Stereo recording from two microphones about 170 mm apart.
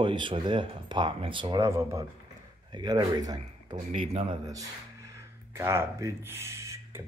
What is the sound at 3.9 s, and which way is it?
Speech, 35° right (ahead or behind).